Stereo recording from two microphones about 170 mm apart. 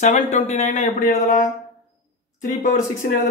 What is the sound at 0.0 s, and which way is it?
Speech, 45° left (ahead or behind).